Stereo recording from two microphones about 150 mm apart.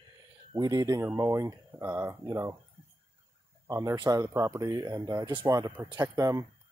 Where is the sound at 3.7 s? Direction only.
20° right (ahead or behind).